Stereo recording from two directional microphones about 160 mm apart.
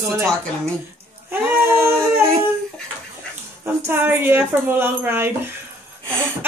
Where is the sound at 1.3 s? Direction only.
10° right (ahead or behind).